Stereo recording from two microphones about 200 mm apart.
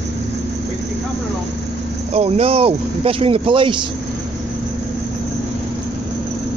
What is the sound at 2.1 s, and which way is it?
Speech, 30° right (ahead or behind).